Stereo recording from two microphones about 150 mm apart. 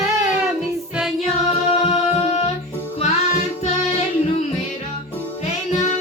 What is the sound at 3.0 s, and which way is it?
Child singing, 45° left (ahead or behind).